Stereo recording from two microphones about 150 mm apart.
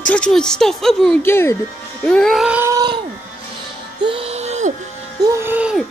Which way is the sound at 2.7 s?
30° right (ahead or behind).